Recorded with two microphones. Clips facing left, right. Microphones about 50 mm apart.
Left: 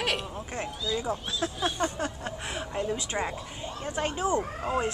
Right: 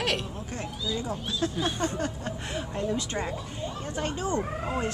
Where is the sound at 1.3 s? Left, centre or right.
Centre.